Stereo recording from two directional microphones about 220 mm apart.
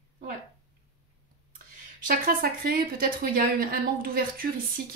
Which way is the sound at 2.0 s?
45° right (ahead or behind).